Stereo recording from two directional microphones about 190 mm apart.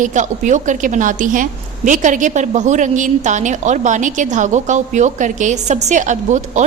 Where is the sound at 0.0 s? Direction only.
40° right (ahead or behind).